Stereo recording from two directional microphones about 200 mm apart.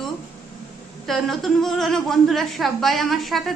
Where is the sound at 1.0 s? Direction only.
Centre (ahead or behind).